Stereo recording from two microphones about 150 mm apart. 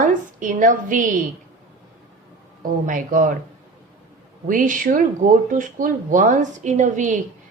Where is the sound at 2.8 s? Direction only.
60° right (ahead or behind).